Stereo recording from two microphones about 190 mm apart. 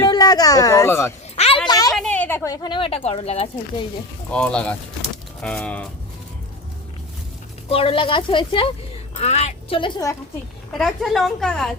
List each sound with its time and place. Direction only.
0.0 s speech: 20° left (ahead or behind)
1.4 s a sound: 30° left (ahead or behind)
2.0 s a child's voice: 5° left (ahead or behind); by 3.5 s 30° left (ahead or behind)
4.3 s a woman's voice: 5° left (ahead or behind)
7.7 s a woman's voice: 30° left (ahead or behind)
10.7 s a woman's voice: centre (ahead or behind)